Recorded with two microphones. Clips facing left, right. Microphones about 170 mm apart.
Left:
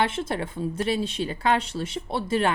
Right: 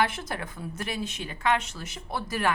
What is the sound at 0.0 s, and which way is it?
A woman's voice, 25° left (ahead or behind).